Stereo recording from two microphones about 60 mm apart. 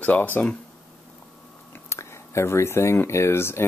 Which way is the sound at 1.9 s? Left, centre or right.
Left.